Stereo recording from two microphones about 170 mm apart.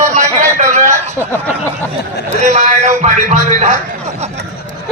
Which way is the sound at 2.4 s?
45° right (ahead or behind).